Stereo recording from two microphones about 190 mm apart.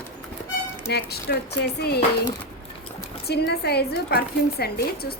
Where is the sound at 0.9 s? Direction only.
60° left (ahead or behind).